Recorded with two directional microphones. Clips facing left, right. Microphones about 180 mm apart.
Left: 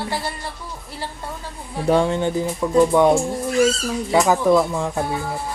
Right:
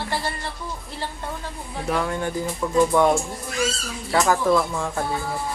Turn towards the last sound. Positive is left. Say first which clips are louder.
# left 4 dB
turn(degrees=15)  # may be behind; listen again after turning